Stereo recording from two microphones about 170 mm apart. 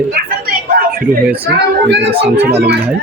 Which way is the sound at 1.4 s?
85° right.